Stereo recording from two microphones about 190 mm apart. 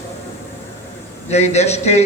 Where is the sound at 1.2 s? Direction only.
35° left (ahead or behind).